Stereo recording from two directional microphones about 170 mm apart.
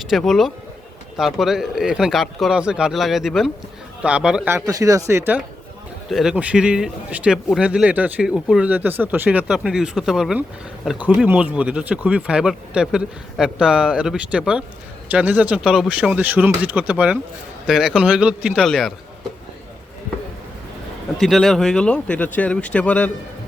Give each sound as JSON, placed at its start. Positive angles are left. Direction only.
{"t": 0.0, "sound": "speech", "side_deg": 0}
{"t": 4.5, "sound": "speech", "side_deg": -20}
{"t": 6.1, "sound": "speech", "side_deg": 0}
{"t": 21.2, "sound": "speech", "side_deg": 0}